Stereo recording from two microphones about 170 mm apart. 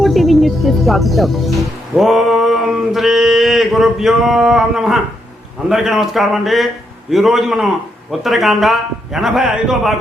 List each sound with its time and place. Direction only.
0.0 s mantra: centre (ahead or behind)